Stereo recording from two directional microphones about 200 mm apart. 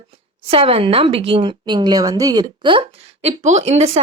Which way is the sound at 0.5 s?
30° right (ahead or behind).